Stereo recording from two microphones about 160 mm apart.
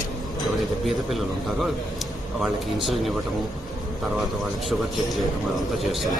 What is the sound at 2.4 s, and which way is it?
Speech, centre (ahead or behind).